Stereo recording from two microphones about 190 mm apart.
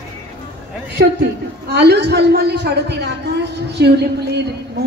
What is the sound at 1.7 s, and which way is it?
A woman's voice, 60° right (ahead or behind).